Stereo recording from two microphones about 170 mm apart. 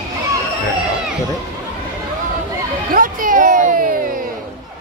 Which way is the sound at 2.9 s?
55° right (ahead or behind).